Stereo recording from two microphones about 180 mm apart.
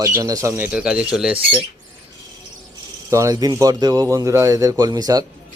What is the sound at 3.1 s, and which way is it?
Speech, 15° right (ahead or behind).